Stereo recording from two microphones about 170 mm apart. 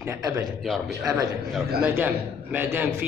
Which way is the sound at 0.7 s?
Centre (ahead or behind).